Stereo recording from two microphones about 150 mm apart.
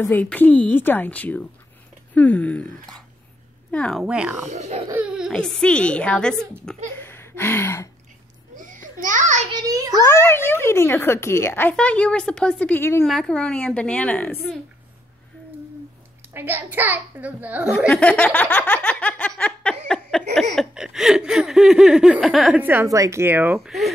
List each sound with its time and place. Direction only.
0.0 s speech: 10° left (ahead or behind)
4.0 s a child's voice: 5° right (ahead or behind)
4.5 s speech: 50° right (ahead or behind)
4.9 s speech: 5° right (ahead or behind)
7.0 s a sound: 15° left (ahead or behind)
8.5 s a sound: 60° right (ahead or behind)
9.5 s a sound: 25° right (ahead or behind)
10.0 s speech: 15° left (ahead or behind)
13.0 s speech: centre (ahead or behind)
16.3 s a child's voice: 15° right (ahead or behind)
17.7 s a sound: 5° left (ahead or behind)
22.6 s a child's voice: 15° right (ahead or behind)